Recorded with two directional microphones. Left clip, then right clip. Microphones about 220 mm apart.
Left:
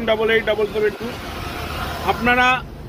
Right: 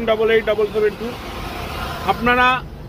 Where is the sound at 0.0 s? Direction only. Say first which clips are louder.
Right 1 dB; 20° left (ahead or behind).